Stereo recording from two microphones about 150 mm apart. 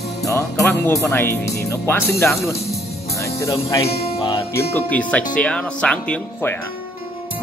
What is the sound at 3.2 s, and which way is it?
Music, 20° left (ahead or behind).